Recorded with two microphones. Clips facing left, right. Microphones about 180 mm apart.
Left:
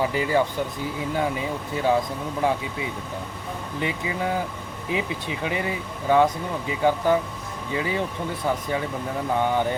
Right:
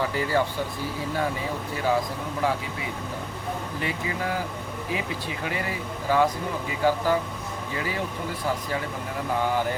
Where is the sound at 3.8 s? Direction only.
20° left (ahead or behind).